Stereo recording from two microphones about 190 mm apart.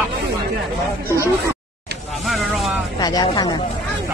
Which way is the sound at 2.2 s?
Centre (ahead or behind).